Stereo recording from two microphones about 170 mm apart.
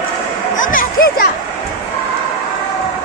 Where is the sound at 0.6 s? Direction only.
55° left (ahead or behind).